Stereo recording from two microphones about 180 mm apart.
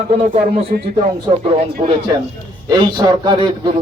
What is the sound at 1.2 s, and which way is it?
A man's voice, 30° right (ahead or behind).